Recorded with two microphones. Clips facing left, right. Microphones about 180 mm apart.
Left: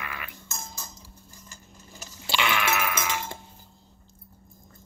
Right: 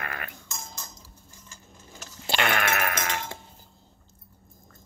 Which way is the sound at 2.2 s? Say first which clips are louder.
Right 1 dB; 50° right (ahead or behind).